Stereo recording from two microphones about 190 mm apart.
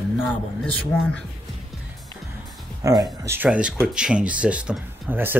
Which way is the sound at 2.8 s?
20° right (ahead or behind).